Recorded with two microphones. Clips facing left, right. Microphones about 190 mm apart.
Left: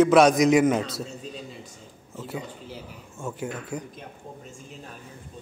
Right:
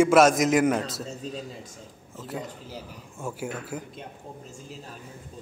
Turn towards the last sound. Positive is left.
turn(degrees=-5)  # may be behind; listen again after turning